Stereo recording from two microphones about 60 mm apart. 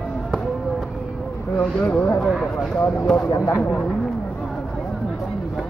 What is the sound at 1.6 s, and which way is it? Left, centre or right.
Speech, left.